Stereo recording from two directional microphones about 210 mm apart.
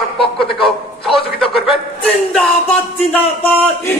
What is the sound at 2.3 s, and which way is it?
Speech, 5° left (ahead or behind).